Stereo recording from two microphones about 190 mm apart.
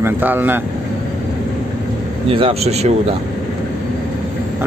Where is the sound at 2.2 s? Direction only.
30° right (ahead or behind).